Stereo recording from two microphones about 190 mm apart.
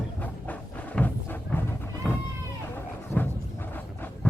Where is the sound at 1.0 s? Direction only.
5° left (ahead or behind).